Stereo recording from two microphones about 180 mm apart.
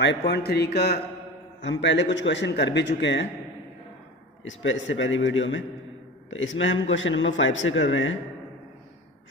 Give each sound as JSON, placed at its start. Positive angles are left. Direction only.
{"t": 0.3, "sound": "speech", "side_deg": 60}
{"t": 1.6, "sound": "a man's voice", "side_deg": 80}
{"t": 4.5, "sound": "a man's voice", "side_deg": 90}